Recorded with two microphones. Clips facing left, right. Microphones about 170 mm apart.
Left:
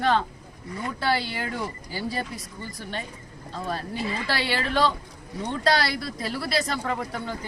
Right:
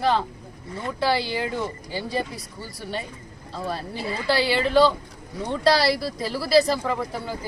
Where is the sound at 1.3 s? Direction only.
25° right (ahead or behind).